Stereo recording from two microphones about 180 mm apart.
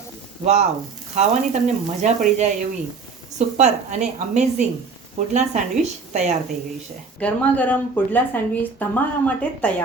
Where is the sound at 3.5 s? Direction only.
40° right (ahead or behind).